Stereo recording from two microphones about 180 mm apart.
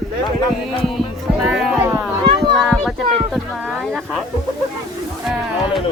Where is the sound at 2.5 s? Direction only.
Centre (ahead or behind).